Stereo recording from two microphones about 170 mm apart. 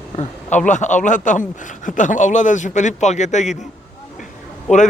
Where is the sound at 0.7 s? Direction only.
45° left (ahead or behind).